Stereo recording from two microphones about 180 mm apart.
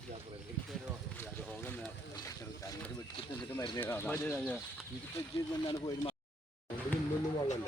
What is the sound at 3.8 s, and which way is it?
Speech, 10° left (ahead or behind).